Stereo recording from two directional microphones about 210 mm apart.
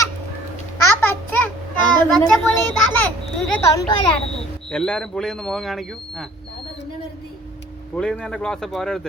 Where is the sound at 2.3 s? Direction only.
5° left (ahead or behind).